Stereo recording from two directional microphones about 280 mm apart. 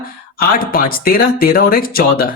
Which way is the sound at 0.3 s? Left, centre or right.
Left.